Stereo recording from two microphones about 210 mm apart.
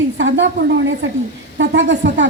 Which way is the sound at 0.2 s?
60° right (ahead or behind).